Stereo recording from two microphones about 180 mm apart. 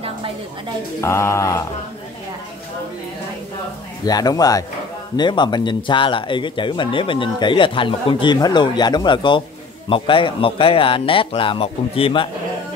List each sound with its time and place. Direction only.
1.0 s speech: 15° left (ahead or behind)
4.0 s speech: 20° left (ahead or behind)